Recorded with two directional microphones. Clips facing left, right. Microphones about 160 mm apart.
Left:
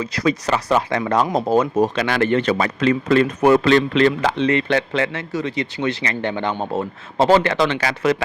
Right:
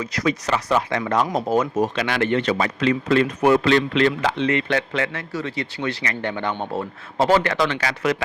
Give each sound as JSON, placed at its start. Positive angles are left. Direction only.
{"t": 0.0, "sound": "speech", "side_deg": 30}